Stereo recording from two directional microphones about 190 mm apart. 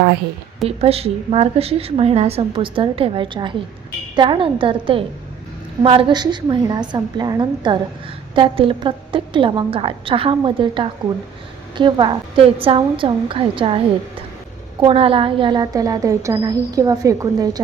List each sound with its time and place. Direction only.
0.8 s a woman's voice: 30° right (ahead or behind)